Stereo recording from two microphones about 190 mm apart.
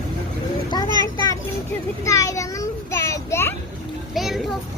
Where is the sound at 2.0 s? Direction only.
15° left (ahead or behind).